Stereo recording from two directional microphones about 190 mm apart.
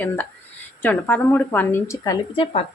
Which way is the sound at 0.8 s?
10° left (ahead or behind).